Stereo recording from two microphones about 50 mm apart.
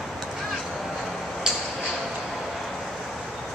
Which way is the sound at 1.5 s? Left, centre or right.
Centre.